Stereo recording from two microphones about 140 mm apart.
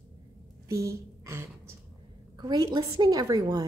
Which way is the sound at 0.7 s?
20° right (ahead or behind).